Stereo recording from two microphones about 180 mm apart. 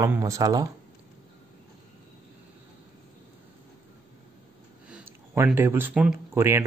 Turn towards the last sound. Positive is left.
turn(degrees=-10)  # may be behind; listen again after turning